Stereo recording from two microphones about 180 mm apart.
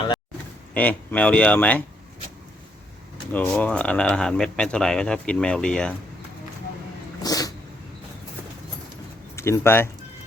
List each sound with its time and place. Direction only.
0.7 s speech: 10° left (ahead or behind)
3.3 s speech: 10° left (ahead or behind)
7.2 s cat: 20° left (ahead or behind)
9.3 s speech: 15° left (ahead or behind)